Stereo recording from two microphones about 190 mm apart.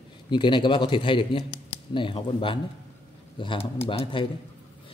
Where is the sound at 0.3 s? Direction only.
25° left (ahead or behind).